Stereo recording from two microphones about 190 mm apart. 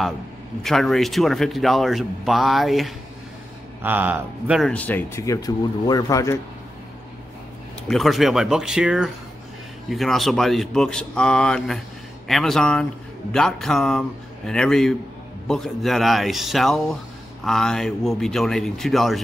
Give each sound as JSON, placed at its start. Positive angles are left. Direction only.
{"t": 0.6, "sound": "a man's voice", "side_deg": 0}
{"t": 4.6, "sound": "speech", "side_deg": 10}
{"t": 7.9, "sound": "a man's voice", "side_deg": 0}